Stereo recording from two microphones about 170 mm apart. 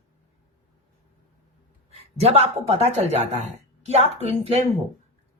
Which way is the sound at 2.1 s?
35° right (ahead or behind).